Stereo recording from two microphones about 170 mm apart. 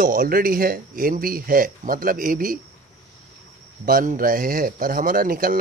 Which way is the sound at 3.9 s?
55° right (ahead or behind).